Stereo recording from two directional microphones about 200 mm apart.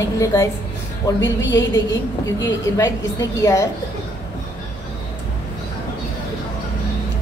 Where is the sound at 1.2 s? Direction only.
70° left (ahead or behind).